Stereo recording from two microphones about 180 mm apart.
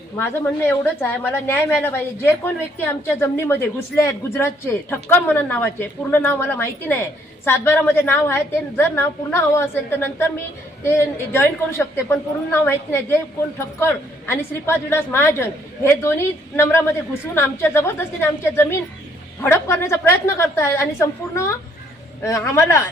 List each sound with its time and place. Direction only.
0.2 s a woman's voice: 10° left (ahead or behind)